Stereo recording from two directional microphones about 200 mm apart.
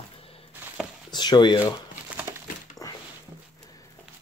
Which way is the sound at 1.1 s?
20° left (ahead or behind).